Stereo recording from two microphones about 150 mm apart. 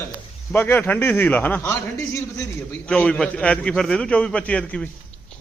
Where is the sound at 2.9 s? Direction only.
5° left (ahead or behind).